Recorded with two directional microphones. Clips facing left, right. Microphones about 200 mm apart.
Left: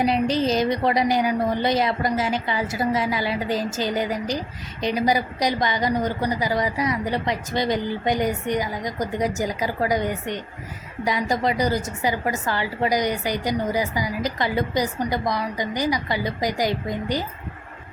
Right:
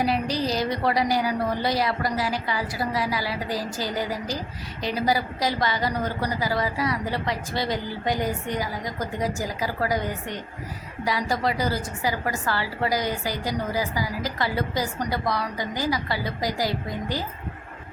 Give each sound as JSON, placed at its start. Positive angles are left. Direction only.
{"t": 0.0, "sound": "a woman's voice", "side_deg": 20}